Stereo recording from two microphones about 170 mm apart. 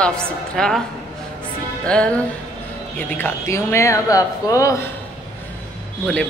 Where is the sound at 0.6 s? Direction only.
5° left (ahead or behind).